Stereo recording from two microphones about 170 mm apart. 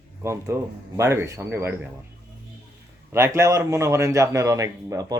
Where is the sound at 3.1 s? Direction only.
15° right (ahead or behind).